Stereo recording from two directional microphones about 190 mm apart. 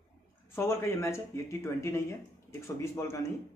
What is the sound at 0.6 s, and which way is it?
Speech, 15° left (ahead or behind).